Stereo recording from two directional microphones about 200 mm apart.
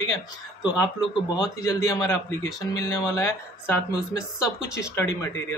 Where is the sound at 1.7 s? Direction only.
15° left (ahead or behind).